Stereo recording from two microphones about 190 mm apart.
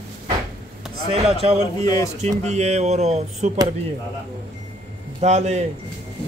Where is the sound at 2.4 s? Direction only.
35° right (ahead or behind).